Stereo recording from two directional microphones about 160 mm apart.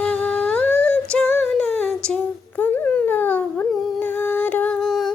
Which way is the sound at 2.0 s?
10° left (ahead or behind).